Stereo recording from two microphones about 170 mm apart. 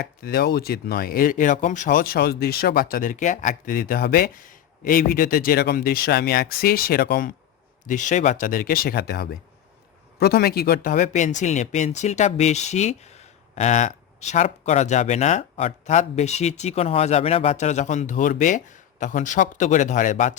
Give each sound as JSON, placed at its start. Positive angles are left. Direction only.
{"t": 0.2, "sound": "speech", "side_deg": 65}